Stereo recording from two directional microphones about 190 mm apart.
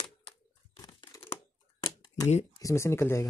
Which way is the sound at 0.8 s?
15° left (ahead or behind).